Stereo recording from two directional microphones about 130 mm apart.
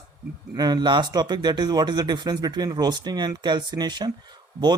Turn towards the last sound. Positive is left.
turn(degrees=-35)  # may be behind; listen again after turning